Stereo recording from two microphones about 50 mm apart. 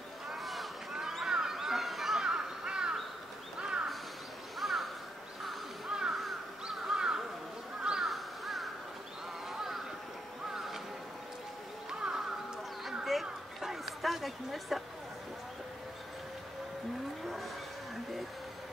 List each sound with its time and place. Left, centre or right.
0.3 s a sound: centre
1.2 s goose: centre
2.2 s crow: centre
4.6 s crow: centre
5.9 s crow: centre
8.0 s crow: centre
9.5 s a sound: centre
11.9 s music: centre
13.0 s a sound: centre